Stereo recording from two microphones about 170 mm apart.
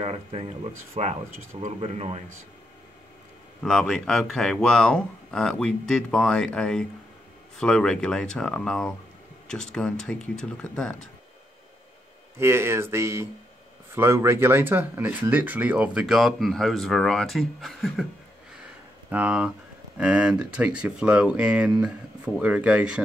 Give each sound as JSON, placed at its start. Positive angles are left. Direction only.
{"t": 0.0, "sound": "speech", "side_deg": -35}
{"t": 3.6, "sound": "speech", "side_deg": 0}
{"t": 12.4, "sound": "speech", "side_deg": -15}
{"t": 19.0, "sound": "speech", "side_deg": -10}